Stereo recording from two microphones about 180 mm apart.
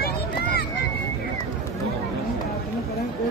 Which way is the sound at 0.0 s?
60° left (ahead or behind).